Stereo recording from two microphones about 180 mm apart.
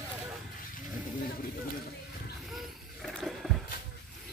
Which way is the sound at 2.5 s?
Centre (ahead or behind).